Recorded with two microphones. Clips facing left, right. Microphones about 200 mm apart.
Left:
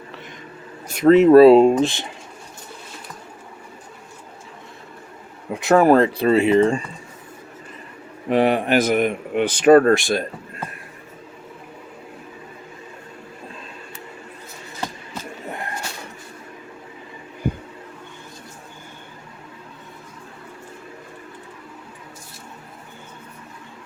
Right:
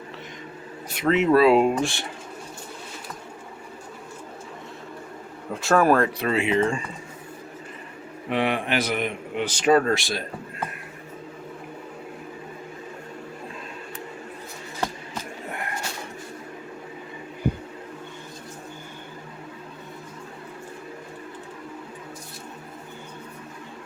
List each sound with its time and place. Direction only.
0.9 s speech: 40° left (ahead or behind); by 2.0 s 20° left (ahead or behind)
5.5 s speech: 20° left (ahead or behind); by 6.8 s 35° left (ahead or behind)
8.3 s a man's voice: 40° left (ahead or behind)